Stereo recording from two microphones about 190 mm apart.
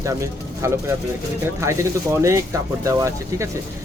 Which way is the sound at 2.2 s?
15° right (ahead or behind).